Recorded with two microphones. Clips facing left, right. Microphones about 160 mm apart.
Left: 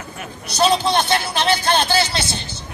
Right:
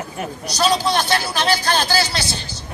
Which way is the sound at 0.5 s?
25° left (ahead or behind).